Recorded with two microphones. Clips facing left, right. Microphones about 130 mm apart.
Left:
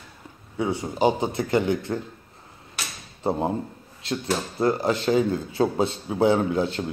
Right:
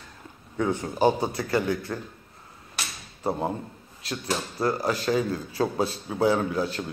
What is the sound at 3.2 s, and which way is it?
Speech, 25° left (ahead or behind).